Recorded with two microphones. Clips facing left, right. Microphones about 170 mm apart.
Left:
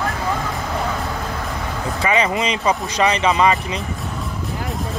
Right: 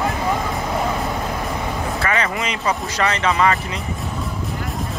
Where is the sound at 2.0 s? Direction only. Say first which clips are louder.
Left 5 dB; 15° left (ahead or behind).